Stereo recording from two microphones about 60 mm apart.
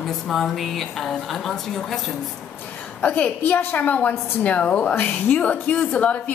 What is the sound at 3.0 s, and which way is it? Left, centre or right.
A woman's voice, left.